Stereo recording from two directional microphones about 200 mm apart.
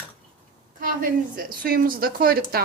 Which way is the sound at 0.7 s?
45° right (ahead or behind).